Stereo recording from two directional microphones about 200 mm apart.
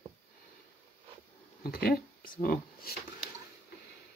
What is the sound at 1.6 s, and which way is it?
Speech, 50° left (ahead or behind).